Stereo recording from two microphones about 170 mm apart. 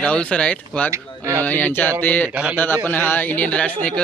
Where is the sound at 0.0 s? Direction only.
10° left (ahead or behind).